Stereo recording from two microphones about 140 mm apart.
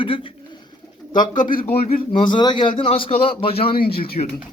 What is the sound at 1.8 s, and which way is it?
A man's voice, 40° left (ahead or behind).